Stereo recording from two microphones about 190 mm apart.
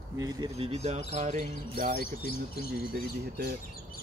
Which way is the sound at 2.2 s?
55° left (ahead or behind).